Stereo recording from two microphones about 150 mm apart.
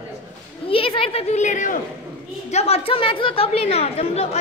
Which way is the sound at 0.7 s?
40° left (ahead or behind).